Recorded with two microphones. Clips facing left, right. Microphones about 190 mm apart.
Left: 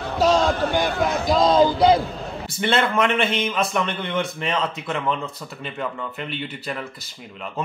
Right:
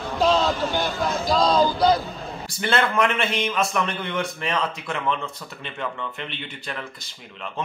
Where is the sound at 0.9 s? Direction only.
65° left (ahead or behind).